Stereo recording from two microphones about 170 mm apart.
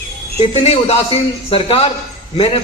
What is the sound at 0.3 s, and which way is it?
A man's voice, 40° left (ahead or behind).